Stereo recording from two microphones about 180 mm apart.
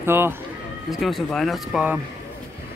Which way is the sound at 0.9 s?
Centre (ahead or behind).